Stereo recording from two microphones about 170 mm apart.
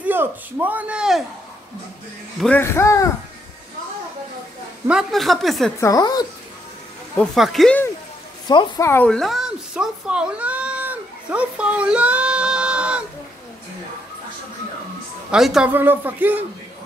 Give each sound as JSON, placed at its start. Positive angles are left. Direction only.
{"t": 0.0, "sound": "a man's voice", "side_deg": -10}
{"t": 2.4, "sound": "speech", "side_deg": 10}
{"t": 4.8, "sound": "a woman's voice", "side_deg": 0}
{"t": 5.8, "sound": "speech", "side_deg": 20}
{"t": 7.2, "sound": "a woman's voice", "side_deg": 0}
{"t": 8.5, "sound": "a woman's voice", "side_deg": 20}
{"t": 15.3, "sound": "a man's voice", "side_deg": -5}